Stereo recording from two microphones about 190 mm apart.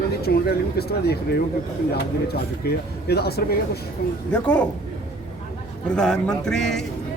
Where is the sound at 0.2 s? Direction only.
55° left (ahead or behind).